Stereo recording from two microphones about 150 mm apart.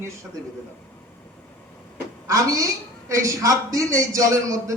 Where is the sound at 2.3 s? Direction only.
20° right (ahead or behind).